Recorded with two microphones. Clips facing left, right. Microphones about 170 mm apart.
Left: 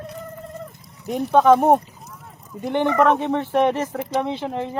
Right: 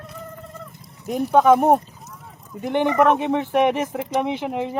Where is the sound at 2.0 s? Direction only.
Centre (ahead or behind).